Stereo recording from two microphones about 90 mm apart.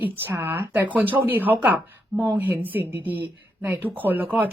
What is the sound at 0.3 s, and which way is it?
Speech, 25° right (ahead or behind).